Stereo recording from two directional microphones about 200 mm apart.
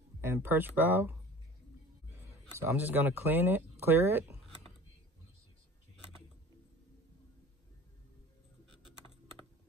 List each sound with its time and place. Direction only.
0.2 s speech: 10° right (ahead or behind)
2.6 s speech: 10° right (ahead or behind)